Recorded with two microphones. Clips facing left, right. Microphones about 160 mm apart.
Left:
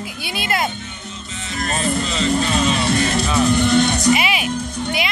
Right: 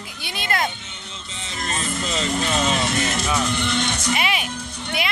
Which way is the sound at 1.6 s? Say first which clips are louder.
Left 6 dB; 40° left (ahead or behind).